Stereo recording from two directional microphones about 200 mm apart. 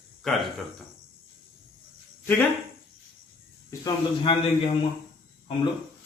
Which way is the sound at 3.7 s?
20° left (ahead or behind).